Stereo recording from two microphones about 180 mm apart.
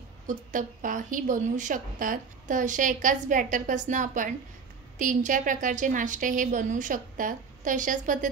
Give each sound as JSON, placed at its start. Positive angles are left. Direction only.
{"t": 0.3, "sound": "a woman's voice", "side_deg": -45}